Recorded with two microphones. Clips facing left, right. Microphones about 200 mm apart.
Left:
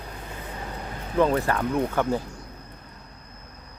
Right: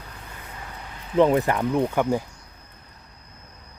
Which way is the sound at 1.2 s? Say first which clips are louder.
Right 3 dB; 20° right (ahead or behind).